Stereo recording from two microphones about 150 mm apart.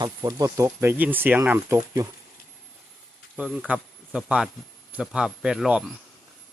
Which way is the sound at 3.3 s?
5° right (ahead or behind).